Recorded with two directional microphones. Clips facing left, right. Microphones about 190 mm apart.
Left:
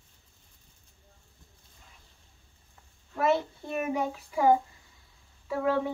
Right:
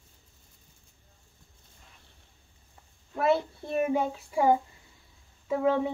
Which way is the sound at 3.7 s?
30° right (ahead or behind).